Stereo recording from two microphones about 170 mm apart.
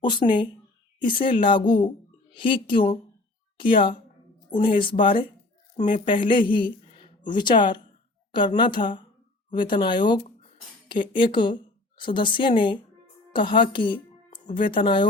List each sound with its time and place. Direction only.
0.0 s a woman's voice: 25° left (ahead or behind)